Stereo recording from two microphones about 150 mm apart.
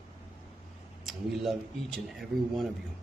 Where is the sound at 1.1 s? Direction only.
Centre (ahead or behind).